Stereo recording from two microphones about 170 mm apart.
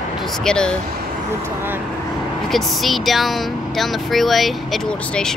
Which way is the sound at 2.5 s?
Centre (ahead or behind).